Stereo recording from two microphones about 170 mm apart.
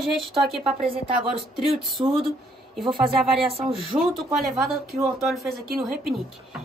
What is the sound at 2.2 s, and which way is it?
Speech, centre (ahead or behind).